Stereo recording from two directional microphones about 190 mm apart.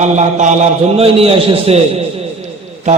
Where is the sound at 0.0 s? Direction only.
40° right (ahead or behind).